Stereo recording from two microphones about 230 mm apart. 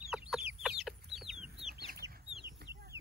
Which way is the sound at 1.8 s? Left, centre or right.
Right.